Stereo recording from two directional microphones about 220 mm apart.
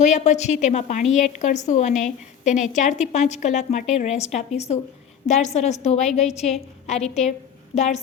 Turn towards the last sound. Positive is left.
turn(degrees=30)  # may be behind; listen again after turning